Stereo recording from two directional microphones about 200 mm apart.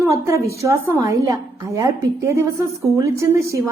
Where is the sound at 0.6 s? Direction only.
15° right (ahead or behind).